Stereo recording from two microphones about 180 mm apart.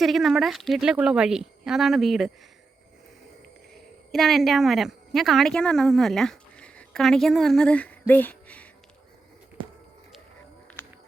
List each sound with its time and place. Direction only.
0.0 s speech: centre (ahead or behind)
4.1 s a woman's voice: centre (ahead or behind)
9.6 s a sound: 30° right (ahead or behind)